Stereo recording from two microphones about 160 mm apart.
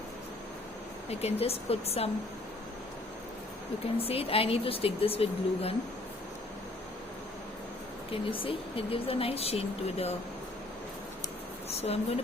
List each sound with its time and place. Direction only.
1.2 s speech: 40° left (ahead or behind)
3.9 s speech: 35° left (ahead or behind)
8.1 s speech: 35° left (ahead or behind)
11.7 s speech: 40° left (ahead or behind)